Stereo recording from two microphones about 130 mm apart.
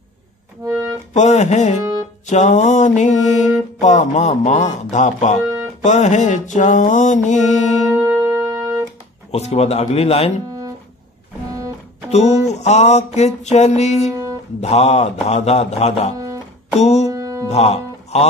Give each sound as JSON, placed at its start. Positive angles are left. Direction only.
{"t": 0.7, "sound": "music", "side_deg": -25}
{"t": 1.1, "sound": "a sound", "side_deg": 65}
{"t": 2.2, "sound": "music", "side_deg": 65}
{"t": 3.8, "sound": "a sound", "side_deg": 65}
{"t": 5.9, "sound": "music", "side_deg": 65}
{"t": 7.9, "sound": "music", "side_deg": -20}
{"t": 9.3, "sound": "speech", "side_deg": 55}
{"t": 12.1, "sound": "a sound", "side_deg": 60}
{"t": 16.8, "sound": "music", "side_deg": 55}
{"t": 17.1, "sound": "music", "side_deg": -25}
{"t": 17.5, "sound": "speech", "side_deg": 55}